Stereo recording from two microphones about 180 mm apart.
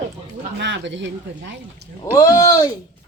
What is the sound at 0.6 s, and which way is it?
Speech, 85° right.